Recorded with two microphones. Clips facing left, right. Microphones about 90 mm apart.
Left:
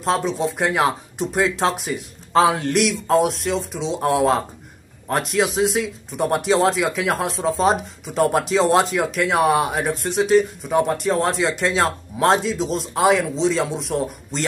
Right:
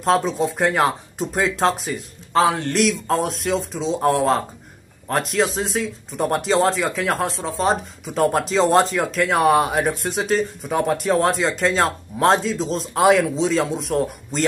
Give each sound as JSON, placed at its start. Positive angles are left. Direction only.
{"t": 0.0, "sound": "speech", "side_deg": 0}
{"t": 2.3, "sound": "speech", "side_deg": 20}
{"t": 2.7, "sound": "speech", "side_deg": 5}
{"t": 7.3, "sound": "speech", "side_deg": 20}
{"t": 8.1, "sound": "speech", "side_deg": 0}